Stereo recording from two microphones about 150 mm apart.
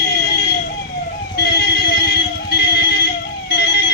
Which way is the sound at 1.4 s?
90° left.